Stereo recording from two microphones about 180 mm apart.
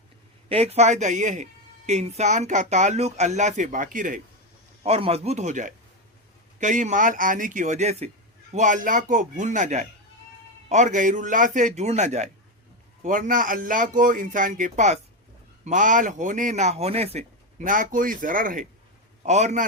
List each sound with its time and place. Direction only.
0.4 s speech: 35° right (ahead or behind)
4.8 s speech: 35° right (ahead or behind)